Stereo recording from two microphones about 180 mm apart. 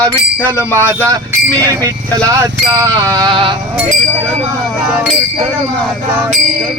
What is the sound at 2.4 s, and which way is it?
Sheep, 20° right (ahead or behind).